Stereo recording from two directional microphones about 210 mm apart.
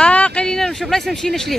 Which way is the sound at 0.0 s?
5° left (ahead or behind).